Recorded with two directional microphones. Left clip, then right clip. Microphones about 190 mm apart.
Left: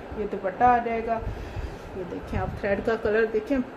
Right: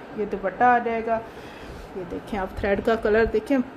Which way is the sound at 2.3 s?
55° right (ahead or behind).